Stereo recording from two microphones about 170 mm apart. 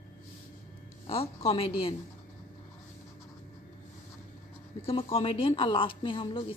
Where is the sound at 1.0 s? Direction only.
35° left (ahead or behind).